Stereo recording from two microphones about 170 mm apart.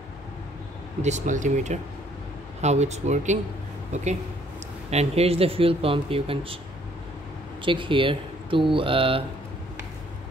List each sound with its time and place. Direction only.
1.0 s speech: 45° right (ahead or behind)
7.6 s speech: 30° right (ahead or behind)